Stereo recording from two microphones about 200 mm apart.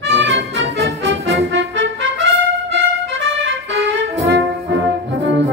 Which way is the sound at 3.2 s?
70° right (ahead or behind).